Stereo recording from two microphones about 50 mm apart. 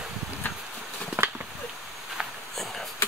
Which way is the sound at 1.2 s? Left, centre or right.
Right.